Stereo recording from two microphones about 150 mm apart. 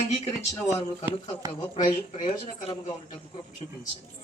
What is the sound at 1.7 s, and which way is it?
Speech, 45° left (ahead or behind).